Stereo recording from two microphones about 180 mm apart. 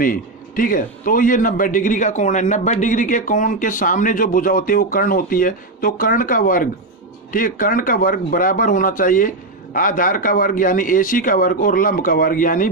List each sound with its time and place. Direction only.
0.0 s speech: 50° left (ahead or behind)